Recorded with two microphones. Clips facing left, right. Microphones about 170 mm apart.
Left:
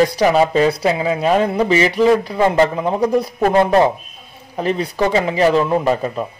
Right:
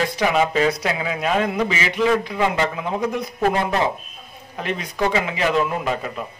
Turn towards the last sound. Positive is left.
turn(degrees=35)  # may be behind; listen again after turning